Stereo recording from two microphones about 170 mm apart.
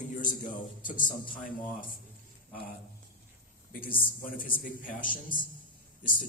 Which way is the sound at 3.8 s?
55° left (ahead or behind).